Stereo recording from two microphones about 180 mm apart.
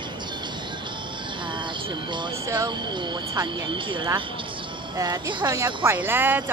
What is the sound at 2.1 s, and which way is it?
Speech, 20° right (ahead or behind).